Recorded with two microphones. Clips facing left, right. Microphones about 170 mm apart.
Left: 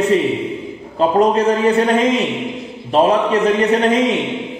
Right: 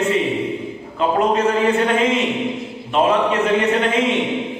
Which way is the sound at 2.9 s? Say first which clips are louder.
Left 3 dB; 35° left (ahead or behind).